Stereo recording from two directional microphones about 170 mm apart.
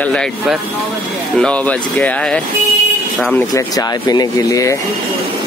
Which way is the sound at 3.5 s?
20° left (ahead or behind).